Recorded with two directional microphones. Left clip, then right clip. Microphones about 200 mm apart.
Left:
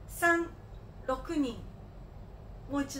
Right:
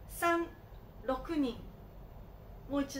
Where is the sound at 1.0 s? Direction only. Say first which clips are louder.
Left 2 dB; 15° right (ahead or behind).